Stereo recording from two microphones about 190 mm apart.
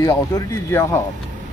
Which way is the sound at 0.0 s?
15° left (ahead or behind).